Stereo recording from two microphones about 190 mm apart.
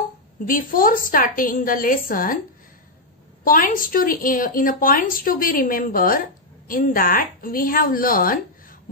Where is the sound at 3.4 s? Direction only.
45° left (ahead or behind).